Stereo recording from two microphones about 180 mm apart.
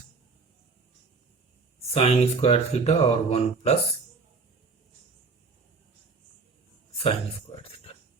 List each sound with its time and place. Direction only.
1.9 s speech: 35° left (ahead or behind)